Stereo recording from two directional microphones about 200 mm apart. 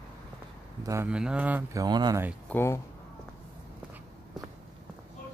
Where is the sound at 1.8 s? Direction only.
20° right (ahead or behind).